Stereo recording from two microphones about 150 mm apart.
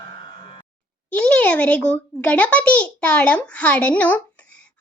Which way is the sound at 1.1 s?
10° left (ahead or behind).